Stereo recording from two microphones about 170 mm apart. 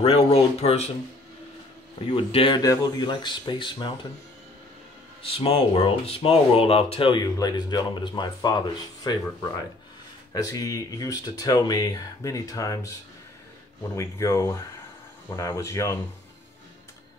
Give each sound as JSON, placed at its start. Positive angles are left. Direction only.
{"t": 0.0, "sound": "speech", "side_deg": 35}
{"t": 2.0, "sound": "speech", "side_deg": 30}
{"t": 5.2, "sound": "speech", "side_deg": 35}
{"t": 10.3, "sound": "speech", "side_deg": 20}
{"t": 13.9, "sound": "speech", "side_deg": 15}